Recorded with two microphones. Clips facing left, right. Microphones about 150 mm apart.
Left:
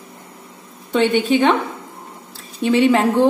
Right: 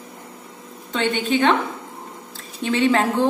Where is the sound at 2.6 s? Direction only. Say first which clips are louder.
Left 4 dB; 15° left (ahead or behind).